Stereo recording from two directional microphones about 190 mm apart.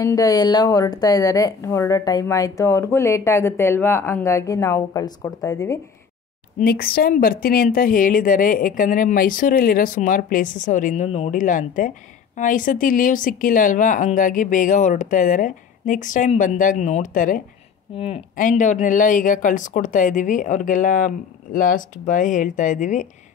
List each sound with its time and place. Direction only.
0.0 s a woman's voice: 15° left (ahead or behind)
6.6 s speech: 55° left (ahead or behind)
17.9 s speech: 30° left (ahead or behind)
18.3 s speech: 45° left (ahead or behind)